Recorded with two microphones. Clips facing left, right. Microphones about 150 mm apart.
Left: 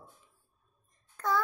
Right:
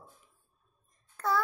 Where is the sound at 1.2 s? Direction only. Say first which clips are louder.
Even; 5° right (ahead or behind).